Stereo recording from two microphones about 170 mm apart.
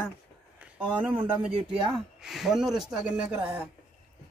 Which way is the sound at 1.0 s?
10° right (ahead or behind).